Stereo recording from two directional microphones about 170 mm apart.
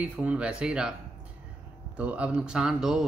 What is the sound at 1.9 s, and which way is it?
Speech, 5° right (ahead or behind).